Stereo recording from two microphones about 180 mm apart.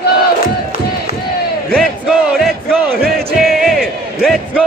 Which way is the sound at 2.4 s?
5° left (ahead or behind).